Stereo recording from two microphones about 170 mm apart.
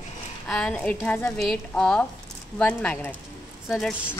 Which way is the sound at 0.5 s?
5° left (ahead or behind).